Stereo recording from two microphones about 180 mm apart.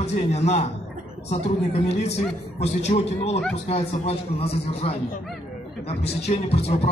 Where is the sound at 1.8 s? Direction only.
35° left (ahead or behind).